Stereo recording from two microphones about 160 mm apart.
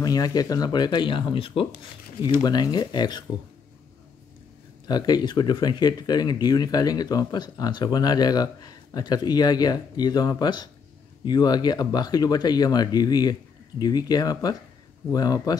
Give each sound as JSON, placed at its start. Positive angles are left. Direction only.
{"t": 0.0, "sound": "speech", "side_deg": 25}
{"t": 4.8, "sound": "speech", "side_deg": 25}